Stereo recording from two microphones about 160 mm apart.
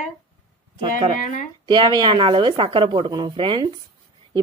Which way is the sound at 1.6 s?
30° right (ahead or behind).